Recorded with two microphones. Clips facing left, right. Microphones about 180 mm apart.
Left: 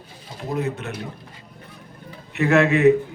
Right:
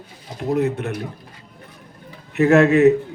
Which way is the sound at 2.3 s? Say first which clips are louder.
Right 4 dB; 45° right (ahead or behind).